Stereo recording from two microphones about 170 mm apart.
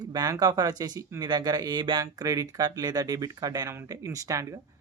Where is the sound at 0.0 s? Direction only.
25° right (ahead or behind).